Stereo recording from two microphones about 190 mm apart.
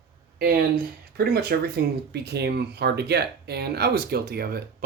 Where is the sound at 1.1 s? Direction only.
55° right (ahead or behind).